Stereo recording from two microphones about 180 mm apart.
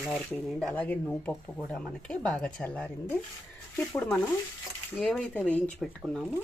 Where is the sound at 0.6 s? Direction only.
5° left (ahead or behind).